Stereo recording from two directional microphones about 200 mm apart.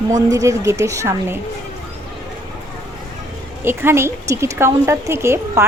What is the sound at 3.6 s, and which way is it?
A woman's voice, 10° right (ahead or behind).